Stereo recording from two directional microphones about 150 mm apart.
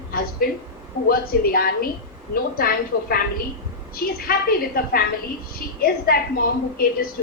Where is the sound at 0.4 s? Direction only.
80° left.